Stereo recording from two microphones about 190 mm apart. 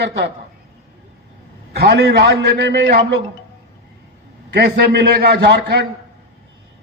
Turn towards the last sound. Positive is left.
turn(degrees=-60)  # may be behind; listen again after turning